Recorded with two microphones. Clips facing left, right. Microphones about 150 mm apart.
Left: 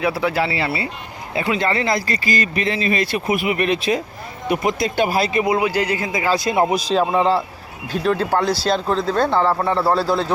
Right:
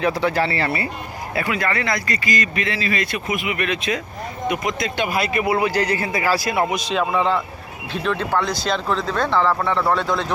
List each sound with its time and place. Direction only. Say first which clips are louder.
0.0 s speech: even; 10° left (ahead or behind); by 5.5 s 30° left (ahead or behind)
5.5 s a man's voice: left 1 dB; 15° left (ahead or behind); by 10.3 s 35° left (ahead or behind)